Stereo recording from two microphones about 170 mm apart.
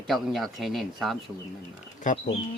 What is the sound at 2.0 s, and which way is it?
Speech, 50° left (ahead or behind).